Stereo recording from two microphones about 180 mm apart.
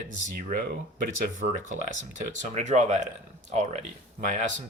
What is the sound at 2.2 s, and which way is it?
Speech, 40° right (ahead or behind).